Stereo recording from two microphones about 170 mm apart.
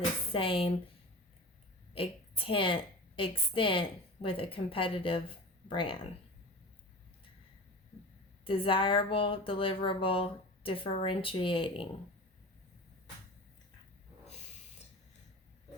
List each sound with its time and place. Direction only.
0.3 s speech: 30° left (ahead or behind)
1.9 s a woman's voice: 35° left (ahead or behind)
8.4 s speech: 30° left (ahead or behind)